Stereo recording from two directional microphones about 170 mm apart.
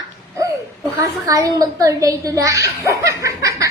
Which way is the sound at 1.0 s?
20° right (ahead or behind).